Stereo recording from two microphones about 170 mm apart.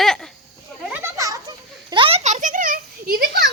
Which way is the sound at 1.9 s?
30° right (ahead or behind).